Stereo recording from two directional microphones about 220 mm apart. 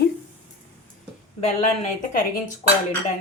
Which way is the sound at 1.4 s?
35° left (ahead or behind).